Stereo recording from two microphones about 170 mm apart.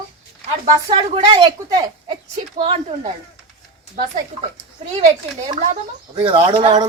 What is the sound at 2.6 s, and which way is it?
Speech, 40° right (ahead or behind).